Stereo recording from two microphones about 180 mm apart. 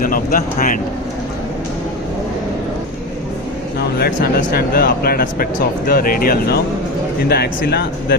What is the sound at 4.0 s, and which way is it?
Speech, 50° left (ahead or behind).